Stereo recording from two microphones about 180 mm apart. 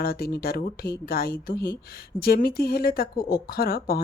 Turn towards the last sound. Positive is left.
turn(degrees=55)  # may be behind; listen again after turning